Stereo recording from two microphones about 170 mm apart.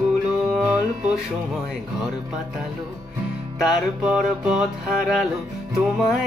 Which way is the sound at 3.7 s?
5° right (ahead or behind).